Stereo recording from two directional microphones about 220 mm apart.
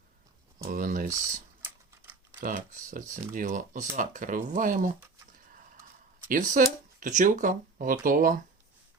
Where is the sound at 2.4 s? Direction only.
35° right (ahead or behind).